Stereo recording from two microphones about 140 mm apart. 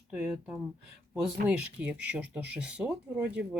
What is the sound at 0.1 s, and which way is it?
Speech, 10° right (ahead or behind).